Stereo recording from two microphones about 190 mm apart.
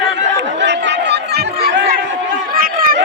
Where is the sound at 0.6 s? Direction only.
65° right (ahead or behind).